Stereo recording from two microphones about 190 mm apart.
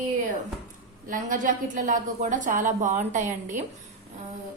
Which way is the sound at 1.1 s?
45° right (ahead or behind).